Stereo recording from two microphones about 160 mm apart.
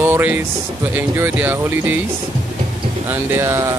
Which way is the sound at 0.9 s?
15° right (ahead or behind).